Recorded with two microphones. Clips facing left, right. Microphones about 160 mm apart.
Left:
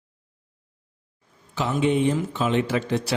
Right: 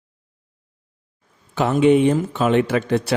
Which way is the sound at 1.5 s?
55° right (ahead or behind).